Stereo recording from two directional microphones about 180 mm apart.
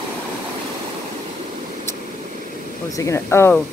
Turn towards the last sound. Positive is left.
turn(degrees=15)  # may be behind; listen again after turning